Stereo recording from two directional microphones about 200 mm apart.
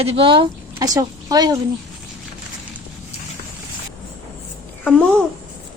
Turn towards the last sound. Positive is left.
turn(degrees=5)  # may be behind; listen again after turning